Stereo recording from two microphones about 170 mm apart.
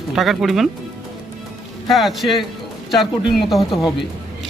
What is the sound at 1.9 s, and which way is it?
Speech, centre (ahead or behind).